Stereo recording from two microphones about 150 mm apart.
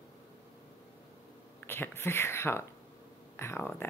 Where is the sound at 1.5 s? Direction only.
15° left (ahead or behind).